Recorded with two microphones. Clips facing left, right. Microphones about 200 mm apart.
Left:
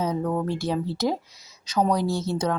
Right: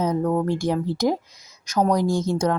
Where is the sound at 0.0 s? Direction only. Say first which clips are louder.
Right 4 dB; 10° right (ahead or behind).